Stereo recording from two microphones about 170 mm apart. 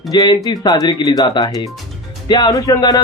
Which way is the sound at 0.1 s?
20° left (ahead or behind).